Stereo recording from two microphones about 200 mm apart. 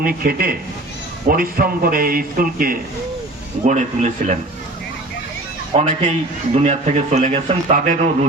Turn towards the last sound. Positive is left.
turn(degrees=-35)  # may be behind; listen again after turning